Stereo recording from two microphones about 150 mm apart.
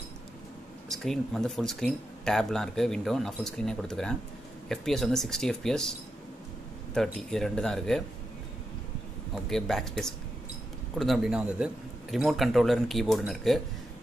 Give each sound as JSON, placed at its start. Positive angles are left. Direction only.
{"t": 0.8, "sound": "speech", "side_deg": 0}
{"t": 9.3, "sound": "speech", "side_deg": 0}